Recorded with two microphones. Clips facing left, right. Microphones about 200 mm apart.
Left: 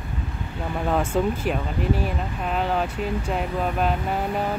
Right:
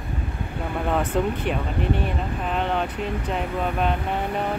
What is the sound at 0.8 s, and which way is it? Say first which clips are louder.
Speech: left 1 dB; centre (ahead or behind).